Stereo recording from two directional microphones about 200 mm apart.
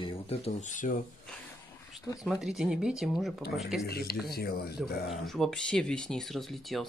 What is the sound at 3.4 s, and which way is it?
Speech, 50° left (ahead or behind).